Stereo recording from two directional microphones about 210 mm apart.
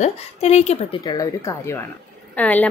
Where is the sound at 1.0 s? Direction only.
15° left (ahead or behind).